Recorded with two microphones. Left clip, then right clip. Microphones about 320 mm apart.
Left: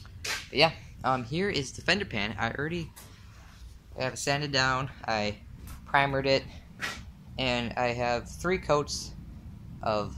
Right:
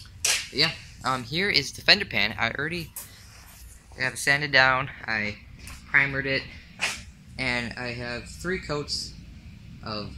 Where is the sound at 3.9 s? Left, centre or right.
Centre.